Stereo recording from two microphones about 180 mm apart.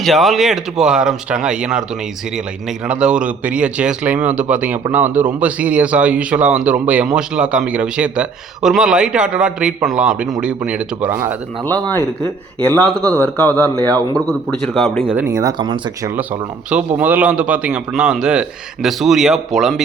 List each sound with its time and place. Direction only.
0.0 s a man's voice: centre (ahead or behind)
11.6 s a man's voice: 10° left (ahead or behind); by 16.1 s 25° right (ahead or behind)
16.1 s a man's voice: 10° right (ahead or behind)